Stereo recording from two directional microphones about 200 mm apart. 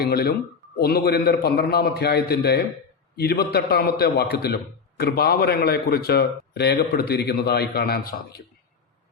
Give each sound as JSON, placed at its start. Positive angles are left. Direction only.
{"t": 0.0, "sound": "a man's voice", "side_deg": 50}